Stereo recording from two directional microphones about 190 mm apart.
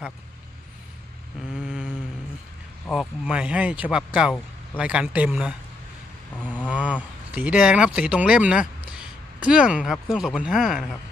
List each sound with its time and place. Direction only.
1.5 s vehicle: 5° right (ahead or behind)
2.9 s speech: centre (ahead or behind)
6.4 s a sound: 5° left (ahead or behind)
6.7 s speech: 10° right (ahead or behind)